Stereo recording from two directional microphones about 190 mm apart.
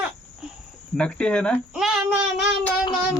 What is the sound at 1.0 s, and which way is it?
Speech, 5° left (ahead or behind).